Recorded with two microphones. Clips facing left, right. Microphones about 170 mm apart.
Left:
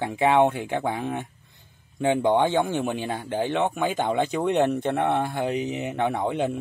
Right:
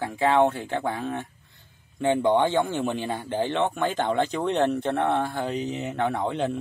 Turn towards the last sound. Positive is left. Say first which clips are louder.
# left 1 dB
turn(degrees=15)  # may be behind; listen again after turning